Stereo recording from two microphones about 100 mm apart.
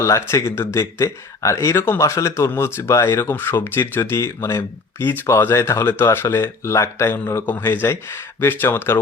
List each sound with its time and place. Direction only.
0.0 s speech: 30° left (ahead or behind)